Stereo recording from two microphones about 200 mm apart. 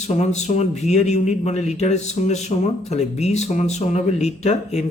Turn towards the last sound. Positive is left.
turn(degrees=35)  # may be behind; listen again after turning